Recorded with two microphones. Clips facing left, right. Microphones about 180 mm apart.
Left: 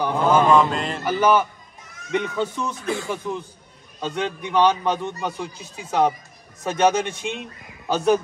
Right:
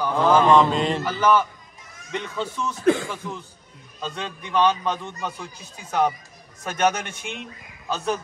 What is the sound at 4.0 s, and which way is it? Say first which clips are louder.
A man's voice: left 6 dB; 20° left (ahead or behind).